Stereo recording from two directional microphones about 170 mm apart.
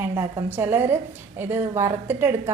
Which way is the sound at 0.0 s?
15° right (ahead or behind).